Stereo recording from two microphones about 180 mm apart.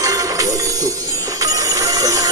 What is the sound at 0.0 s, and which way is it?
Music, 20° right (ahead or behind).